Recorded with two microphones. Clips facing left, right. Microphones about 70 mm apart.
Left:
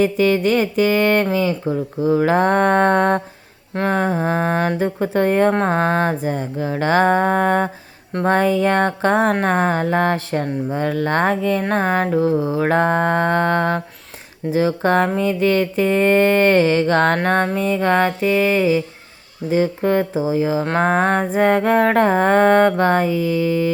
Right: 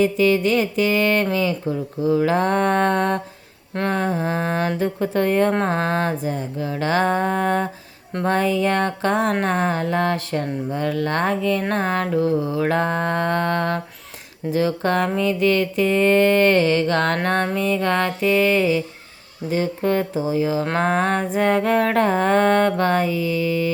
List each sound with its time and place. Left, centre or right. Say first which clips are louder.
0.0 s speech: left 1 dB; left
3.8 s music: left 3 dB; left
4.8 s speech: left 2 dB; left
5.5 s music: left 3 dB; left
6.2 s speech: left 3 dB; left
11.7 s music: left 3 dB; left